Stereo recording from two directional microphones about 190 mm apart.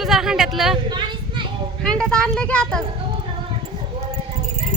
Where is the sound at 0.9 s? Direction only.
25° right (ahead or behind).